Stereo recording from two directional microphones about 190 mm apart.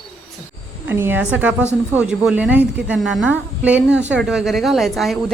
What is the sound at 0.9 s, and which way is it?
A woman's voice, 10° right (ahead or behind).